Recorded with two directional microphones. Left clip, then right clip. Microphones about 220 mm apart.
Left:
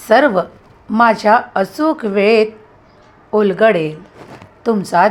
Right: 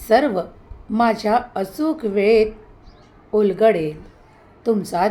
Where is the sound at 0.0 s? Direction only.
15° left (ahead or behind).